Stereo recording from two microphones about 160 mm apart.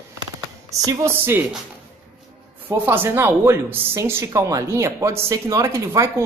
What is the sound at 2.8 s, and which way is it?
A woman's voice, 15° right (ahead or behind).